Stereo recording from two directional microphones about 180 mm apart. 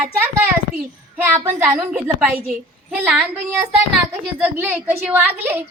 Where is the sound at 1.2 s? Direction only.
15° right (ahead or behind).